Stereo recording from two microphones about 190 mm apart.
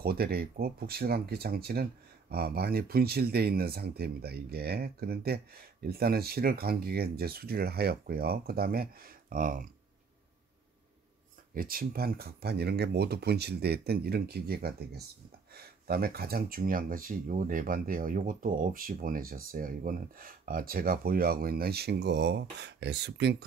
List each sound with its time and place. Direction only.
0.0 s speech: 55° right (ahead or behind)
11.5 s speech: 50° right (ahead or behind)